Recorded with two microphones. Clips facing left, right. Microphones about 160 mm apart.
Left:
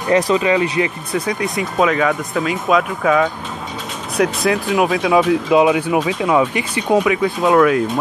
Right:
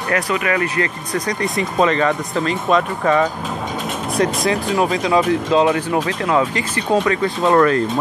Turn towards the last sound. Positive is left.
turn(degrees=5)  # may be behind; listen again after turning